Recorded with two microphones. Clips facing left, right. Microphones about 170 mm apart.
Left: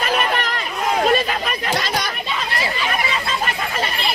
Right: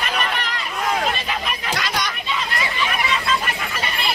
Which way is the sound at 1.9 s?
35° left (ahead or behind).